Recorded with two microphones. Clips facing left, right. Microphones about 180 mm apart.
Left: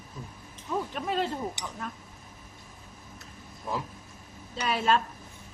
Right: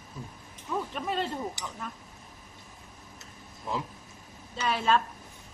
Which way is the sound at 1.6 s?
20° left (ahead or behind).